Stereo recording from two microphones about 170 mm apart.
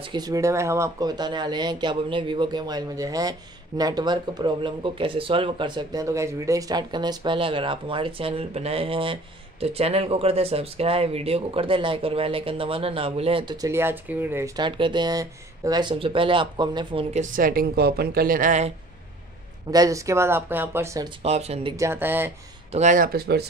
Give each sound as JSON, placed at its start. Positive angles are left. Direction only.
{"t": 0.1, "sound": "speech", "side_deg": -20}
{"t": 13.6, "sound": "speech", "side_deg": -15}
{"t": 14.6, "sound": "speech", "side_deg": -25}
{"t": 17.1, "sound": "a woman's voice", "side_deg": -50}
{"t": 19.7, "sound": "speech", "side_deg": -20}
{"t": 21.2, "sound": "speech", "side_deg": -40}
{"t": 21.7, "sound": "speech", "side_deg": -15}
{"t": 22.7, "sound": "a woman's voice", "side_deg": -45}